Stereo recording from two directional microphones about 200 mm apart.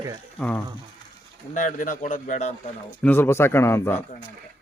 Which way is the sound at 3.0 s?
10° left (ahead or behind).